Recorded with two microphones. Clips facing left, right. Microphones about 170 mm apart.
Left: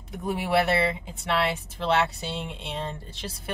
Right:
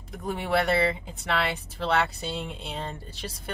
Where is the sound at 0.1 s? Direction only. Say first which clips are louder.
Left 2 dB; 5° left (ahead or behind).